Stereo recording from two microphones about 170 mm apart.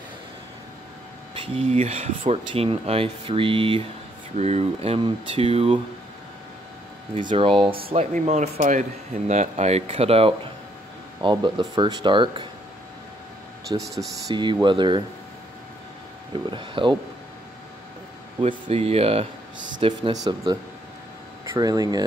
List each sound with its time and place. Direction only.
1.3 s speech: 35° right (ahead or behind)
7.2 s speech: 30° right (ahead or behind)
13.9 s speech: 25° right (ahead or behind)
16.4 s speech: 30° right (ahead or behind)
18.4 s speech: 35° right (ahead or behind)
19.8 s speech: 25° right (ahead or behind)
21.5 s speech: 25° right (ahead or behind)